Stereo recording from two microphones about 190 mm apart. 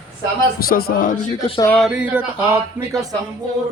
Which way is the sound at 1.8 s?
5° right (ahead or behind).